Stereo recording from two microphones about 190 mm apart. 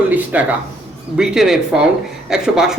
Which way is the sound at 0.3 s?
10° right (ahead or behind).